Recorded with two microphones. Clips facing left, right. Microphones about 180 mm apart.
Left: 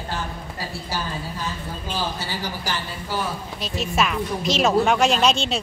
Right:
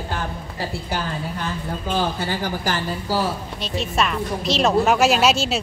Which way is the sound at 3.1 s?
35° right (ahead or behind).